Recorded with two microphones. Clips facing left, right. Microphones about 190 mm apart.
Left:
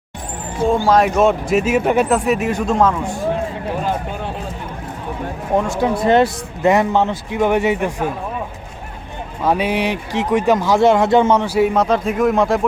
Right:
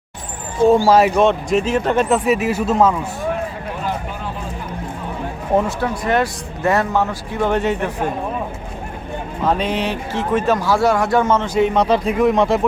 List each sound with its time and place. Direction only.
0.9 s speech: 5° right (ahead or behind)
2.0 s speech: centre (ahead or behind)
5.8 s speech: 25° left (ahead or behind); by 7.9 s 10° left (ahead or behind)
9.4 s speech: 10° left (ahead or behind)